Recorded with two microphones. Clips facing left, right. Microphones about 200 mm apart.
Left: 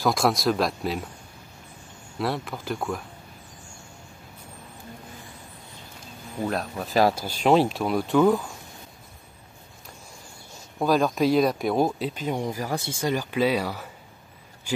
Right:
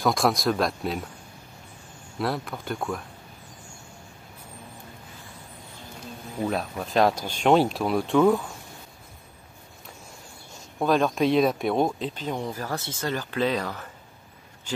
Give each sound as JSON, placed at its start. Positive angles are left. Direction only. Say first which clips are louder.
{"t": 0.0, "sound": "speech", "louder": "even", "side_deg": 0}
{"t": 2.1, "sound": "speech", "louder": "even", "side_deg": 0}
{"t": 6.4, "sound": "speech", "louder": "even", "side_deg": 0}
{"t": 10.8, "sound": "speech", "louder": "even", "side_deg": 0}